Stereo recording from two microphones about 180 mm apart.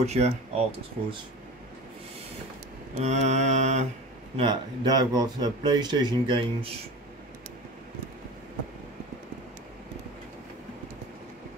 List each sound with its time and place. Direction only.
0.0 s mantra: 35° right (ahead or behind)
3.0 s mantra: 40° right (ahead or behind)
4.4 s speech: 25° right (ahead or behind)